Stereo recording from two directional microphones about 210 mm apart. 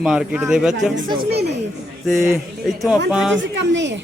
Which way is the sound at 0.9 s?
45° right (ahead or behind).